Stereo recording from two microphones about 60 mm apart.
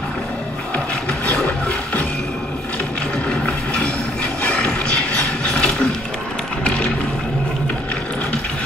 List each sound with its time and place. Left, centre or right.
1.2 s music: left
3.3 s a sound: centre
6.6 s music: centre